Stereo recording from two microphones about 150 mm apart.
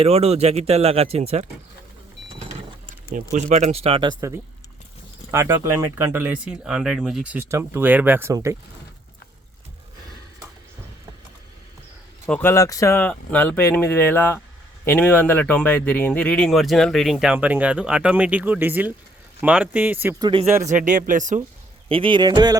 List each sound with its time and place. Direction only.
0.0 s speech: 45° right (ahead or behind)
3.3 s speech: 50° right (ahead or behind)
5.3 s speech: 15° right (ahead or behind)
12.3 s speech: 15° left (ahead or behind); by 20.1 s 10° right (ahead or behind)
20.1 s speech: 25° right (ahead or behind)
20.7 s speech: 60° right (ahead or behind)
21.8 s speech: 35° right (ahead or behind)